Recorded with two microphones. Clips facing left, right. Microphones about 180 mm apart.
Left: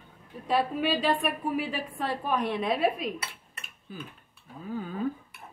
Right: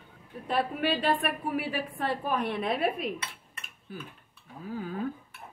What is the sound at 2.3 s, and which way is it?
Speech, 55° right (ahead or behind).